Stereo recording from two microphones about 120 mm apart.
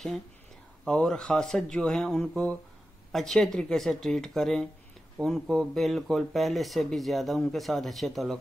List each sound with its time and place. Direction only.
0.8 s speech: 5° left (ahead or behind)